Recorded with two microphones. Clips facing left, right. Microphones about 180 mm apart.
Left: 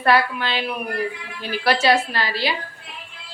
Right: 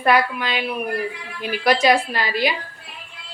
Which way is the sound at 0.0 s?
10° right (ahead or behind).